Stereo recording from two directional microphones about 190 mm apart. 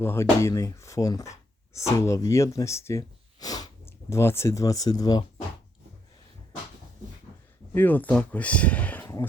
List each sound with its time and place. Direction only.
0.0 s speech: 15° left (ahead or behind)
7.7 s speech: 10° left (ahead or behind)